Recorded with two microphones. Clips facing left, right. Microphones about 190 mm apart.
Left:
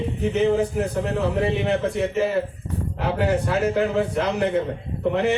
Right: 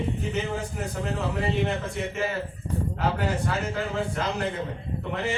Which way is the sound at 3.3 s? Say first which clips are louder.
Left 7 dB; 60° left (ahead or behind).